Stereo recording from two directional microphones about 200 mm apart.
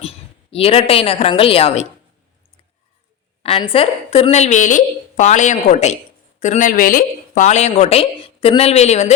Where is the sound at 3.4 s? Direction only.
25° left (ahead or behind).